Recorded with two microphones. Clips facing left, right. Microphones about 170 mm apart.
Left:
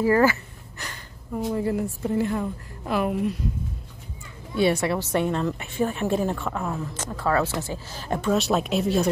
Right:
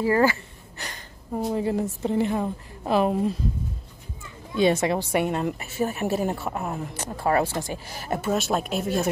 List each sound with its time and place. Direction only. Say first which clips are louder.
0.0 s a woman's voice: left 1 dB; 25° right (ahead or behind)
1.5 s a woman's voice: even; 20° right (ahead or behind)
4.6 s a woman's voice: right 1 dB; 20° right (ahead or behind); by 9.1 s centre (ahead or behind)